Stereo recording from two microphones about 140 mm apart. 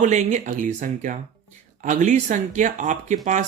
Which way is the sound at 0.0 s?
60° right (ahead or behind).